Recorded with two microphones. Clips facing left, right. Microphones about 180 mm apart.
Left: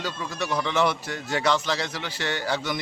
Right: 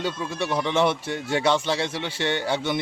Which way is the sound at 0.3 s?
25° right (ahead or behind).